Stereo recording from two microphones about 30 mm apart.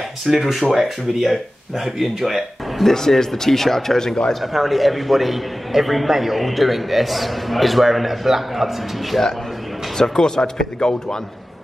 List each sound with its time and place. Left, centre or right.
0.2 s a man's voice: centre
2.9 s speech: centre
4.5 s a man's voice: centre
9.9 s speech: left